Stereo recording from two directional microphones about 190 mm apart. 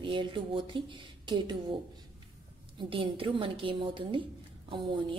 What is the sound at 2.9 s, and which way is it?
A woman's voice, 25° right (ahead or behind).